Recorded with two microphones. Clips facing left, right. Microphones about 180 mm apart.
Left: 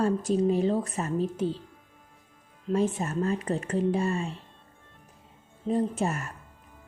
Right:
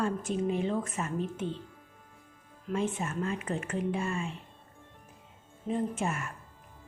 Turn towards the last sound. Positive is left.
turn(degrees=40)  # may be behind; listen again after turning